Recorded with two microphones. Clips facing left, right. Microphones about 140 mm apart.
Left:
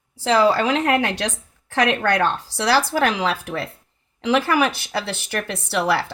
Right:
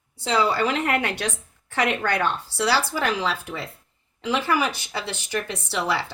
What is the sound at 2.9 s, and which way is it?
Speech, 75° left (ahead or behind).